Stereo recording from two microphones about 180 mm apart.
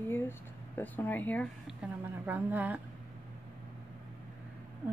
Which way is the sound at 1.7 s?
5° right (ahead or behind).